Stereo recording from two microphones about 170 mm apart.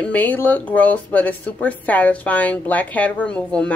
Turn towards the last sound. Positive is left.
turn(degrees=5)  # may be behind; listen again after turning